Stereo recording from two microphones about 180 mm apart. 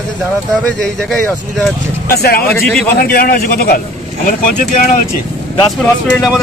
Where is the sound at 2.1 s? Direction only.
60° left (ahead or behind).